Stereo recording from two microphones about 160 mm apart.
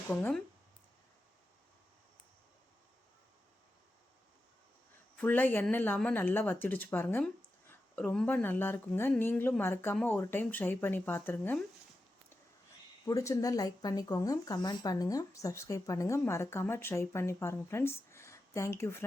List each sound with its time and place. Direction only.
0.1 s speech: 10° left (ahead or behind)
5.1 s speech: 10° left (ahead or behind)
13.1 s speech: 20° left (ahead or behind)